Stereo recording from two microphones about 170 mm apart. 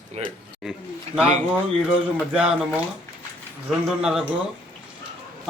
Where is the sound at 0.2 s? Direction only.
35° right (ahead or behind).